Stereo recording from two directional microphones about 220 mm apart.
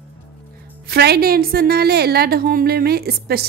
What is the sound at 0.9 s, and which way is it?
A woman's voice, 45° right (ahead or behind).